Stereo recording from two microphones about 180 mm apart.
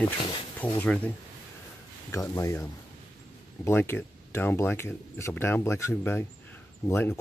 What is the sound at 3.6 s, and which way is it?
Speech, 15° left (ahead or behind).